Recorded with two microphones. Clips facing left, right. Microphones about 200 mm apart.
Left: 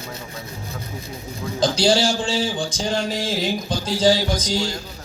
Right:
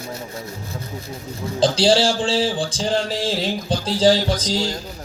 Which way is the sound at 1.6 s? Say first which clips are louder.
Right 2 dB; 30° right (ahead or behind).